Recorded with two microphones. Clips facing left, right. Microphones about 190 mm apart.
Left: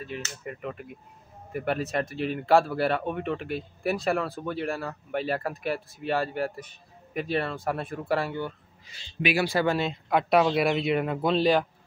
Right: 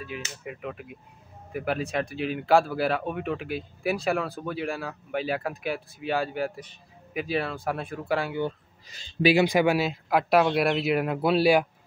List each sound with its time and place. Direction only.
0.2 s speech: 5° right (ahead or behind)
8.8 s speech: 40° right (ahead or behind)
9.3 s speech: 20° right (ahead or behind)